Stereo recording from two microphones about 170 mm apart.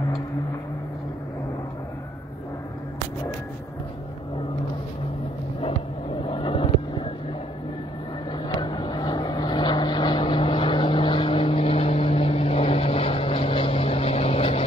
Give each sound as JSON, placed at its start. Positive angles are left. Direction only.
{"t": 6.2, "sound": "vehicle", "side_deg": 30}
{"t": 8.3, "sound": "vehicle", "side_deg": 25}